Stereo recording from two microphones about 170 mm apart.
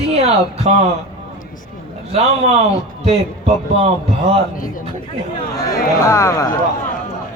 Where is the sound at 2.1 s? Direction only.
35° right (ahead or behind).